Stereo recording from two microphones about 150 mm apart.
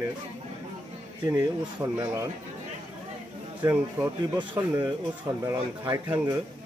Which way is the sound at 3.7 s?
15° right (ahead or behind).